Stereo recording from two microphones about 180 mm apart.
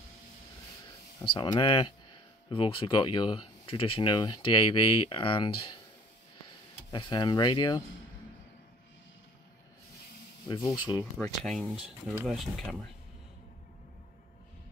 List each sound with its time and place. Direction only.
1.3 s speech: 25° left (ahead or behind)
6.9 s speech: 25° left (ahead or behind)
10.5 s speech: 20° left (ahead or behind)
11.4 s speech: centre (ahead or behind)